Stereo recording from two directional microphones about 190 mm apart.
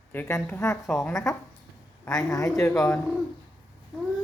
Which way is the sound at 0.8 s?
Centre (ahead or behind).